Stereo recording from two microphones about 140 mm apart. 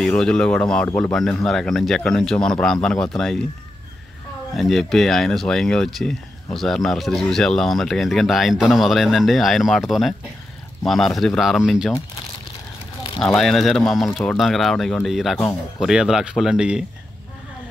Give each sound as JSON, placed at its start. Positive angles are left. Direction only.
{"t": 0.0, "sound": "speech", "side_deg": 5}
{"t": 0.8, "sound": "speech", "side_deg": 15}
{"t": 1.1, "sound": "speech", "side_deg": 5}
{"t": 4.6, "sound": "speech", "side_deg": 0}
{"t": 13.2, "sound": "speech", "side_deg": 5}